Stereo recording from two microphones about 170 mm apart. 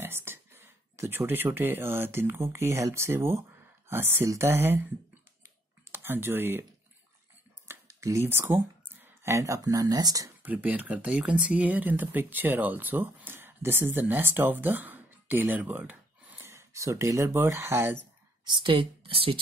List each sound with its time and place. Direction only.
0.0 s speech: 15° right (ahead or behind)
5.9 s speech: 15° right (ahead or behind)
7.6 s speech: 15° right (ahead or behind)
10.4 s speech: 10° right (ahead or behind)
18.4 s speech: 25° right (ahead or behind)